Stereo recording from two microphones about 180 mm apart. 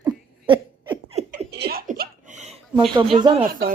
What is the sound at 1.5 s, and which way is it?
Laughter, 60° right (ahead or behind).